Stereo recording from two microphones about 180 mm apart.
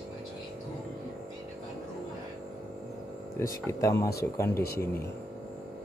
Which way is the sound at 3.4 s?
15° left (ahead or behind).